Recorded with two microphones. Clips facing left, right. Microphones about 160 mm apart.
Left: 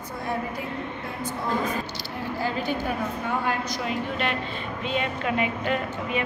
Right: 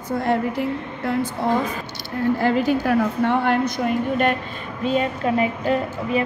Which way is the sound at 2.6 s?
75° right (ahead or behind).